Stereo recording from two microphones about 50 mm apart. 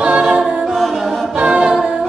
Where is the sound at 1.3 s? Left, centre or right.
Centre.